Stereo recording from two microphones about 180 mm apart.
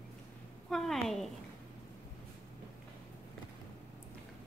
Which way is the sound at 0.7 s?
Centre (ahead or behind).